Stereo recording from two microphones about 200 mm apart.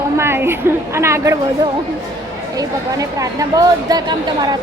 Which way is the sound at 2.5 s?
15° right (ahead or behind).